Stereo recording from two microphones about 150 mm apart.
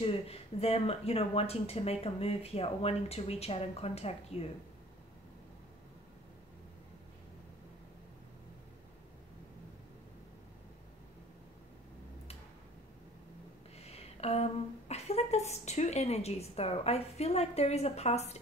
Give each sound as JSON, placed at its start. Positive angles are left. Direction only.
{"t": 0.0, "sound": "speech", "side_deg": 40}
{"t": 13.7, "sound": "speech", "side_deg": 45}